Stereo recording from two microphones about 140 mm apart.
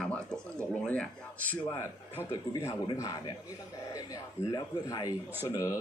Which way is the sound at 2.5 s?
20° left (ahead or behind).